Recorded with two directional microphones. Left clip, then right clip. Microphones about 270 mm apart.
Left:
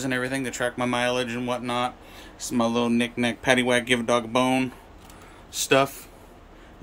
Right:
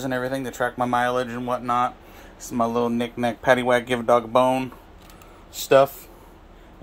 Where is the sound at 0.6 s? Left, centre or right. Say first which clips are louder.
Right 4 dB; centre.